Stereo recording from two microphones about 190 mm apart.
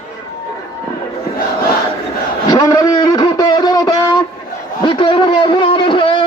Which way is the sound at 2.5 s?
20° left (ahead or behind).